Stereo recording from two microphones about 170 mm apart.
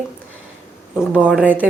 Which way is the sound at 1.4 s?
10° right (ahead or behind).